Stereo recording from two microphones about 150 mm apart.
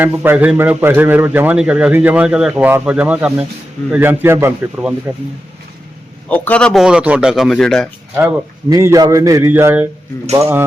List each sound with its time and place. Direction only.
0.0 s a man's voice: 10° right (ahead or behind)
6.2 s a man's voice: 10° left (ahead or behind)
6.8 s speech: 5° right (ahead or behind)
8.7 s a man's voice: 20° right (ahead or behind)